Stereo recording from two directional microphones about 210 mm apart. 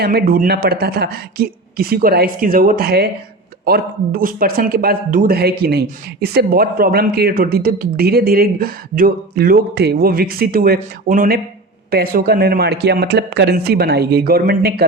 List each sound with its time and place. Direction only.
0.0 s a man's voice: 50° right (ahead or behind)